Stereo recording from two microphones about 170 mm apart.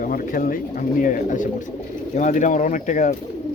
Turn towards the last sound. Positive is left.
turn(degrees=45)  # may be behind; listen again after turning